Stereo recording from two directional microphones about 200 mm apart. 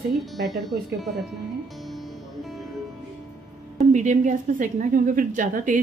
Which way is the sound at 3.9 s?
35° right (ahead or behind).